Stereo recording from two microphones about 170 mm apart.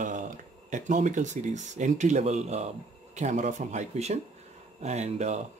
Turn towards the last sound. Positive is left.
turn(degrees=-40)  # may be behind; listen again after turning